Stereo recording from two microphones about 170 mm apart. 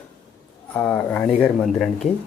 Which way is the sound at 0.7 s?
10° left (ahead or behind).